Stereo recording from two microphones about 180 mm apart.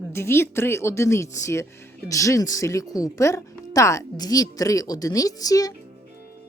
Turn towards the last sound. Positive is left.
turn(degrees=20)  # may be behind; listen again after turning